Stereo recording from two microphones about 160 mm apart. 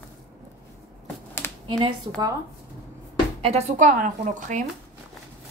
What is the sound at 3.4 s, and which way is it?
A woman's voice, 40° right (ahead or behind).